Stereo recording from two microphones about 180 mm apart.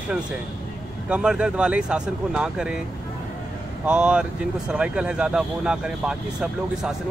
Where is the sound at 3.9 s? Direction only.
5° right (ahead or behind).